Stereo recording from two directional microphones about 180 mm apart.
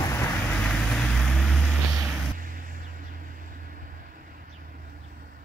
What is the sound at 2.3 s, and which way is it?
Vehicle, 50° right (ahead or behind).